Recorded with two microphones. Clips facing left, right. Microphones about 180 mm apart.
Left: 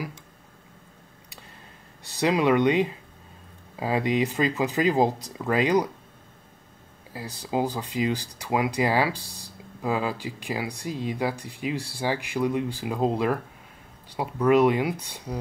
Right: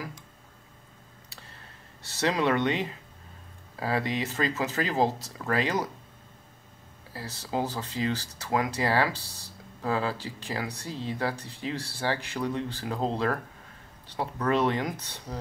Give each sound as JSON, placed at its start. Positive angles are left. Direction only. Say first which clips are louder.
{"t": 2.0, "sound": "speech", "louder": "left 4 dB", "side_deg": 15}
{"t": 7.1, "sound": "speech", "louder": "left 3 dB", "side_deg": 15}